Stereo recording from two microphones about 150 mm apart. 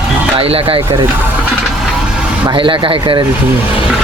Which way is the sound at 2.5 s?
35° right (ahead or behind).